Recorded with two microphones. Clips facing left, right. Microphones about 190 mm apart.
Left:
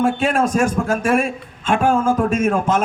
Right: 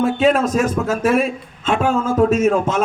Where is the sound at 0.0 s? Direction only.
50° left (ahead or behind).